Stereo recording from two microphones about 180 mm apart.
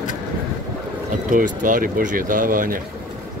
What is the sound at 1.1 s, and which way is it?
Speech, 45° right (ahead or behind).